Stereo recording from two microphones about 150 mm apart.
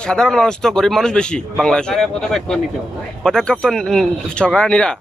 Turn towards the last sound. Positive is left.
turn(degrees=5)  # may be behind; listen again after turning